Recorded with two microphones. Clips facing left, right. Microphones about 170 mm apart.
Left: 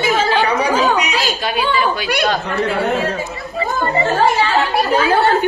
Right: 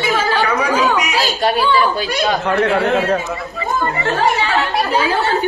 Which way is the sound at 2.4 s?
65° right (ahead or behind).